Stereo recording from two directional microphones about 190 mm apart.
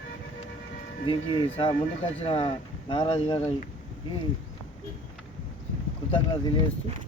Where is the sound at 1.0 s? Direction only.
30° left (ahead or behind).